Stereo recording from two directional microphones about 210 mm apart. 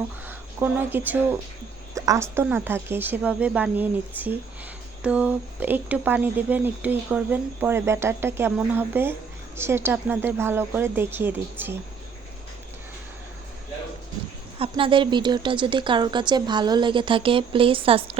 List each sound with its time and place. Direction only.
0.3 s speech: 10° right (ahead or behind)
14.6 s speech: 25° right (ahead or behind)